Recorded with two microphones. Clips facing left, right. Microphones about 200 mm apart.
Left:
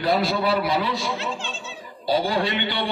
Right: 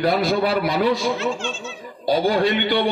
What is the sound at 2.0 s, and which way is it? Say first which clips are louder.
Speech: right 4 dB; 45° right (ahead or behind).